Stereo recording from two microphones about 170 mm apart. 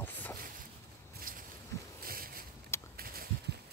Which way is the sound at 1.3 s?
55° right (ahead or behind).